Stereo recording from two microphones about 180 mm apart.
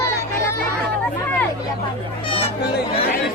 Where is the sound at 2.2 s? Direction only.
30° left (ahead or behind).